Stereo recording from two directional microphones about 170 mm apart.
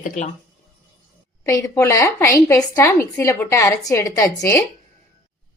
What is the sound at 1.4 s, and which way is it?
A woman's voice, 20° left (ahead or behind).